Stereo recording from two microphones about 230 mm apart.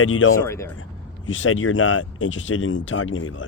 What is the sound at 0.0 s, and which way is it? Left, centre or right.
Speech, left.